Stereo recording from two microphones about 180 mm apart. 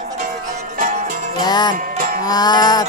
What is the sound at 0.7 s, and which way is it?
Music, 45° right (ahead or behind).